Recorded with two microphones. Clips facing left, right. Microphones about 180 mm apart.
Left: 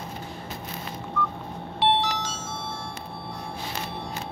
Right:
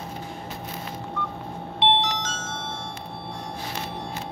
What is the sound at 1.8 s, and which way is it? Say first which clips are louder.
Wind chime: even; 20° right (ahead or behind).